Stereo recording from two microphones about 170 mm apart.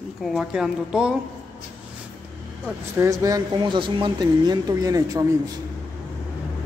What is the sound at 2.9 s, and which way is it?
Speech, 20° right (ahead or behind).